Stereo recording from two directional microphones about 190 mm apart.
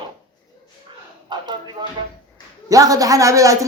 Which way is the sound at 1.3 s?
25° right (ahead or behind).